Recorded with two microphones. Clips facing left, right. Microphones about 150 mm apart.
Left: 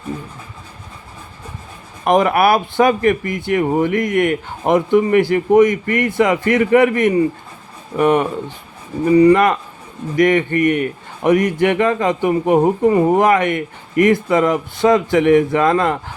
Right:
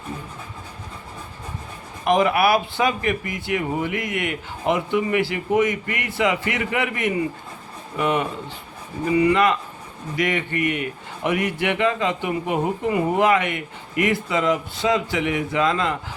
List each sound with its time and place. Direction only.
2.0 s speech: 50° left (ahead or behind)
9.0 s speech: 40° left (ahead or behind)